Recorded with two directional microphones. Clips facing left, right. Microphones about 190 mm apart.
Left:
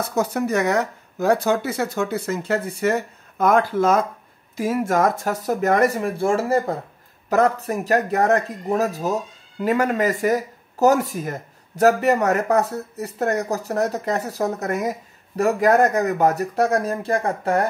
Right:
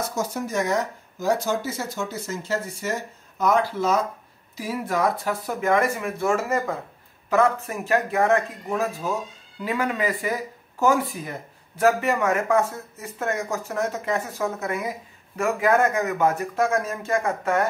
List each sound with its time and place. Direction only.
0.1 s speech: 60° left (ahead or behind); by 17.6 s 35° left (ahead or behind)